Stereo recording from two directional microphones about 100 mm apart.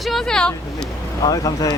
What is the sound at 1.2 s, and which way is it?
Speech, 40° left (ahead or behind).